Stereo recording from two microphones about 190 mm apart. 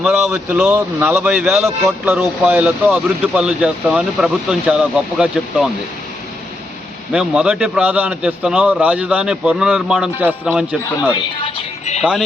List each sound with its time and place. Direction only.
0.0 s speech: 5° right (ahead or behind)
1.6 s a man's voice: 15° right (ahead or behind)
7.1 s a man's voice: 5° right (ahead or behind)
11.4 s music: 30° left (ahead or behind)